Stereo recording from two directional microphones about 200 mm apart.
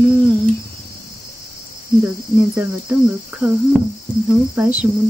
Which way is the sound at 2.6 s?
10° right (ahead or behind).